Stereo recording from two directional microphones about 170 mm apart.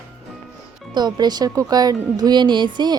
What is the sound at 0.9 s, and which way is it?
Speech, 25° right (ahead or behind).